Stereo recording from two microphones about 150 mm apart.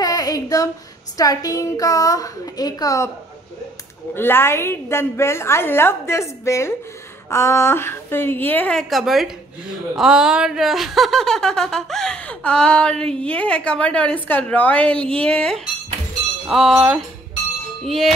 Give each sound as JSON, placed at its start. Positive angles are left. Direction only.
{"t": 0.0, "sound": "a sound", "side_deg": 25}
{"t": 1.1, "sound": "a woman's voice", "side_deg": 25}
{"t": 4.1, "sound": "a woman's voice", "side_deg": 15}